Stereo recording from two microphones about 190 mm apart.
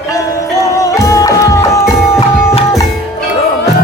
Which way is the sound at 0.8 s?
15° left (ahead or behind).